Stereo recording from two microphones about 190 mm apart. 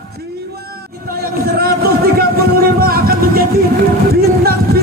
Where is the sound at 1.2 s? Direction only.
55° right (ahead or behind).